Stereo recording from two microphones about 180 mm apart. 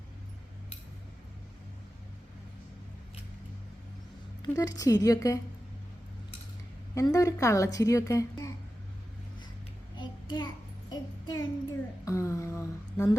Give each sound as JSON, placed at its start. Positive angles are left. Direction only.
{"t": 4.4, "sound": "a woman's voice", "side_deg": 20}
{"t": 6.9, "sound": "a woman's voice", "side_deg": 20}
{"t": 10.0, "sound": "child singing", "side_deg": 25}
{"t": 12.0, "sound": "a sound", "side_deg": 15}